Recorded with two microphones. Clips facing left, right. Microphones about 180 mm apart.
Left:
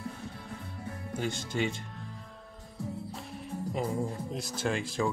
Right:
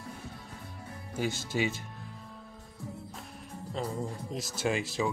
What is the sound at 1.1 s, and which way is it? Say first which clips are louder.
Speech: right 1 dB; 5° right (ahead or behind).